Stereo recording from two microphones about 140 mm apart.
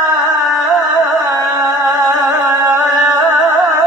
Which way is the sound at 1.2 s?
25° right (ahead or behind).